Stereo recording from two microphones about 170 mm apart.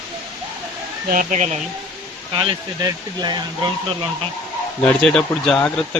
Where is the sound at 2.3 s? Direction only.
25° right (ahead or behind).